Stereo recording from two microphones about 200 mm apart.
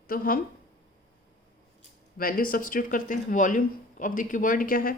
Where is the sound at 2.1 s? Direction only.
45° left (ahead or behind).